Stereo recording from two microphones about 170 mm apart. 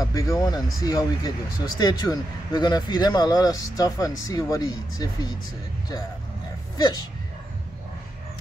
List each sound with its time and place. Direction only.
0.0 s a sound: 20° left (ahead or behind)
0.7 s speech: 20° left (ahead or behind)
6.8 s speech: 25° left (ahead or behind)